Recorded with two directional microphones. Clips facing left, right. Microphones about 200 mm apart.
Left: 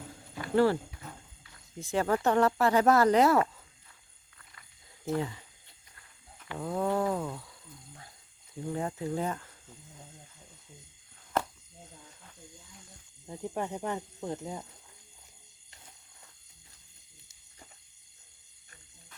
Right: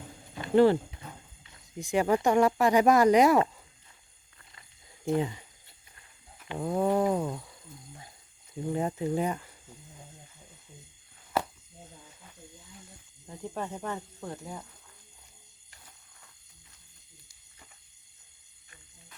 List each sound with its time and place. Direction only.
0.1 s horse: 20° right (ahead or behind)
1.5 s speech: 20° right (ahead or behind)
5.1 s speech: 20° right (ahead or behind)
11.9 s snake: 5° right (ahead or behind)
13.2 s speech: 15° left (ahead or behind)